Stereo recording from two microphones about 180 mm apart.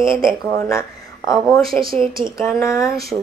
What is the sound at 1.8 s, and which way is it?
Speech, 30° right (ahead or behind).